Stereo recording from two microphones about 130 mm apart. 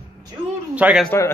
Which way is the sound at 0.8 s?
10° right (ahead or behind).